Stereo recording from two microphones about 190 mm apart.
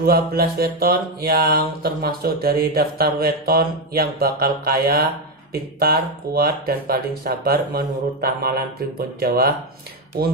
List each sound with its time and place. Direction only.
0.0 s mantra: 55° right (ahead or behind)